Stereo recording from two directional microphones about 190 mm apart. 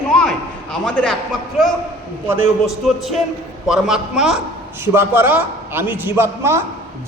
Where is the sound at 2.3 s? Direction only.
Centre (ahead or behind).